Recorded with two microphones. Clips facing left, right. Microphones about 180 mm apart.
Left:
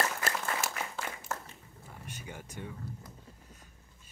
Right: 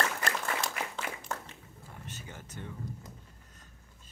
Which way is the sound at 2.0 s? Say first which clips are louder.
Left 2 dB; 15° left (ahead or behind).